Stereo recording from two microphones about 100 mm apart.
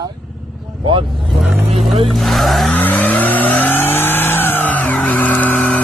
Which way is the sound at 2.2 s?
Centre (ahead or behind).